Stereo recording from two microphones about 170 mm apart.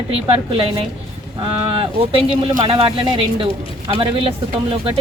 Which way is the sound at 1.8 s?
35° right (ahead or behind).